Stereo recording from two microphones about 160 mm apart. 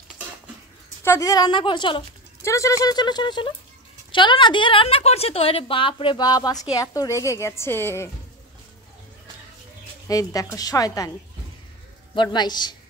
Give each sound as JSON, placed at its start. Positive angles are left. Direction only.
{"t": 1.0, "sound": "a woman's voice", "side_deg": 20}
{"t": 2.4, "sound": "a woman's voice", "side_deg": 20}
{"t": 10.0, "sound": "a woman's voice", "side_deg": 20}
{"t": 12.2, "sound": "a woman's voice", "side_deg": 30}